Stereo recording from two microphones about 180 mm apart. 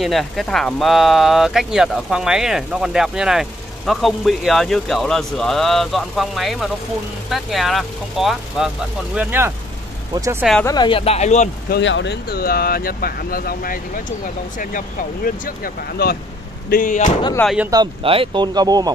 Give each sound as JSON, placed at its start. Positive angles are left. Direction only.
{"t": 0.0, "sound": "speech", "side_deg": 0}
{"t": 10.6, "sound": "speech", "side_deg": 20}
{"t": 11.7, "sound": "speech", "side_deg": 85}
{"t": 15.2, "sound": "speech", "side_deg": 55}
{"t": 17.6, "sound": "speech", "side_deg": -25}